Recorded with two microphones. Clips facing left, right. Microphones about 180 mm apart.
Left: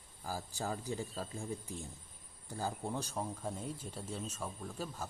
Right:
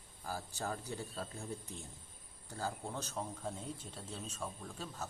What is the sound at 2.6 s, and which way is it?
A man's voice, 15° left (ahead or behind).